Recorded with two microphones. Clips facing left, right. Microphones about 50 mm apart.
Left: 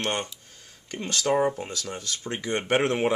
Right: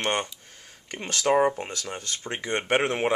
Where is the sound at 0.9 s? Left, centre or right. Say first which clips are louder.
Right 2 dB; right.